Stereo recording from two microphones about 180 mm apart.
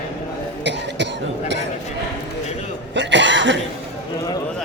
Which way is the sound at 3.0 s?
85° right.